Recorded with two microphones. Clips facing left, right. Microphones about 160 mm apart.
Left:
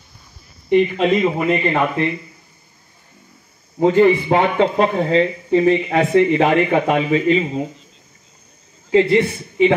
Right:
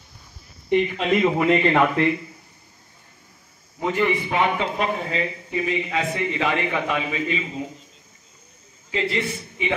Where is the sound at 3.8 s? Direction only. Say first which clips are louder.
Left 9 dB; 30° left (ahead or behind).